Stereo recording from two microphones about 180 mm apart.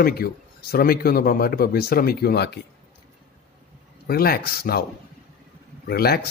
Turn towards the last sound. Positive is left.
turn(degrees=60)  # may be behind; listen again after turning